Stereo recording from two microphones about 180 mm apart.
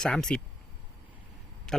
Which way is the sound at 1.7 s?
5° left (ahead or behind).